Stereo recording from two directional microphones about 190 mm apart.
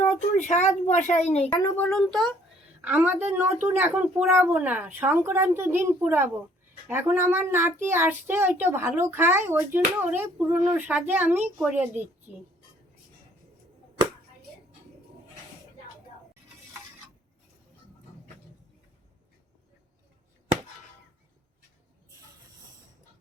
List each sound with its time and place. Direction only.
0.0 s speech: 40° left (ahead or behind)
1.6 s speech: 10° left (ahead or behind)
2.8 s a child's voice: 10° right (ahead or behind)